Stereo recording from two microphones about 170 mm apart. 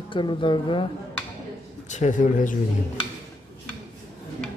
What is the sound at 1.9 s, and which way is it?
Speech, 45° left (ahead or behind).